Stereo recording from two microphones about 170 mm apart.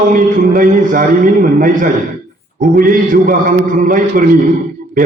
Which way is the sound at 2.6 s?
55° right (ahead or behind).